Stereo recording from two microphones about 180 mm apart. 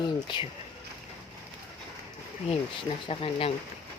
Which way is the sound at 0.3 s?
25° left (ahead or behind).